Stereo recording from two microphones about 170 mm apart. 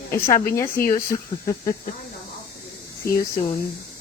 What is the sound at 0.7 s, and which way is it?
Speech, 55° left (ahead or behind).